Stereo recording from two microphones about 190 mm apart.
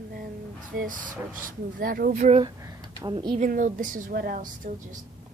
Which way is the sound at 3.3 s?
45° right (ahead or behind).